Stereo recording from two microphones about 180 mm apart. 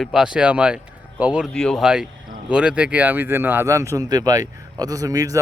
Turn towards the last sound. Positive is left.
turn(degrees=-20)  # may be behind; listen again after turning